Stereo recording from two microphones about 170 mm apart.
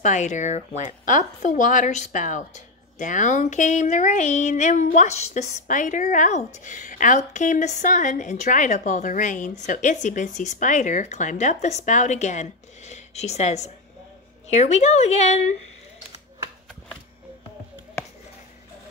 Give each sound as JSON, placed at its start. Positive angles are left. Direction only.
{"t": 0.0, "sound": "a woman's voice", "side_deg": 45}